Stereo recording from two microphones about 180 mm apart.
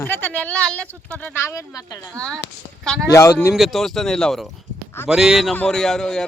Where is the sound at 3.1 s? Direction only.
15° left (ahead or behind).